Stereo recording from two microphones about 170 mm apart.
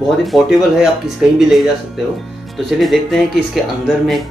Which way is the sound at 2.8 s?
Centre (ahead or behind).